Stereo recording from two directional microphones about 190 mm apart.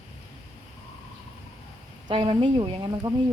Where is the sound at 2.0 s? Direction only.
30° right (ahead or behind).